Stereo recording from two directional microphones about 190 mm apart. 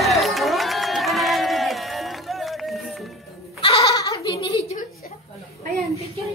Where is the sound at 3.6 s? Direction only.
25° left (ahead or behind).